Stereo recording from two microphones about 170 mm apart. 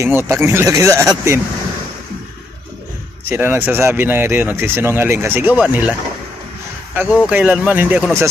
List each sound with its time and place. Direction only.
0.0 s speech: 15° right (ahead or behind)
3.3 s speech: 10° right (ahead or behind)
7.0 s speech: 10° right (ahead or behind)